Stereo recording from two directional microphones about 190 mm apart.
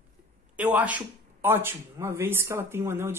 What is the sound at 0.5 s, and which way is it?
Speech, 5° right (ahead or behind).